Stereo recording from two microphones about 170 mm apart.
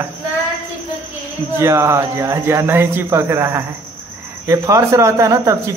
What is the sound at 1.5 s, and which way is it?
Speech, 15° right (ahead or behind).